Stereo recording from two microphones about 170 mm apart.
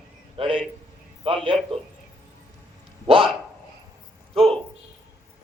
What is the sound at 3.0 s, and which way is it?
Speech, 30° right (ahead or behind).